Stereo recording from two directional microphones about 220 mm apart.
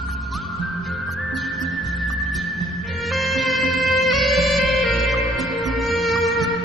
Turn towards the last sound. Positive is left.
turn(degrees=0)  # may be behind; listen again after turning